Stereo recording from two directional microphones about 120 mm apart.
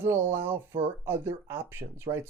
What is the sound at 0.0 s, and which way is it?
Speech, 20° right (ahead or behind).